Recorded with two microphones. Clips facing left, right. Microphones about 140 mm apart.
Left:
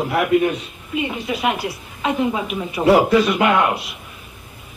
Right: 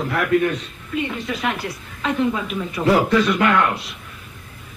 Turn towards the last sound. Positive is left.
turn(degrees=15)  # may be behind; listen again after turning